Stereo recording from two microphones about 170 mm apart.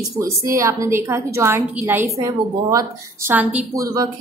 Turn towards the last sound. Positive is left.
turn(degrees=-20)  # may be behind; listen again after turning